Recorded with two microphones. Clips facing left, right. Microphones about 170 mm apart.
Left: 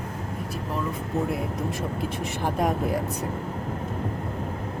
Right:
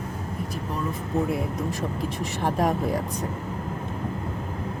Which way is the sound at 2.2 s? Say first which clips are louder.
Right 2 dB; centre (ahead or behind).